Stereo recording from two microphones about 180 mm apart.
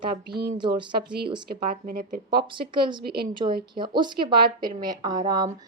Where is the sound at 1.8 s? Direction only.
50° right (ahead or behind).